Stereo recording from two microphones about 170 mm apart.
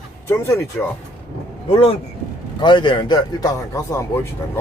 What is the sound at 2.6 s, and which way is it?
A man's voice, 25° left (ahead or behind).